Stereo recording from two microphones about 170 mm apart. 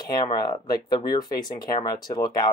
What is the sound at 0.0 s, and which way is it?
Speech, 25° left (ahead or behind).